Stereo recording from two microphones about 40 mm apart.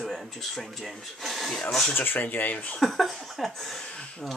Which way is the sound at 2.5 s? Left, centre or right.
Left.